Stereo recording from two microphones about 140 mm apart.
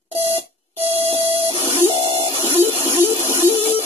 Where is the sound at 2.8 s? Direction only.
20° right (ahead or behind).